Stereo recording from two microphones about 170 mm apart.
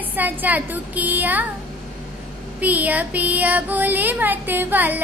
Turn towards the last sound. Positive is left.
turn(degrees=-10)  # may be behind; listen again after turning